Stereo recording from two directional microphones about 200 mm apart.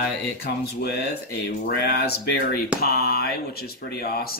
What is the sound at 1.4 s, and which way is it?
Speech, 55° left (ahead or behind).